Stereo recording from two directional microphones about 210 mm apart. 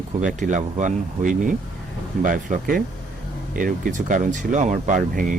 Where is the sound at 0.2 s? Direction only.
35° right (ahead or behind).